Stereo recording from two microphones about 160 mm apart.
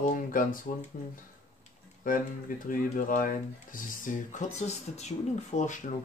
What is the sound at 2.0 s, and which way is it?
Speech, 55° left (ahead or behind).